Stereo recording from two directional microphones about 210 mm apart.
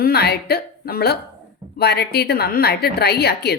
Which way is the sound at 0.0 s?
50° left (ahead or behind).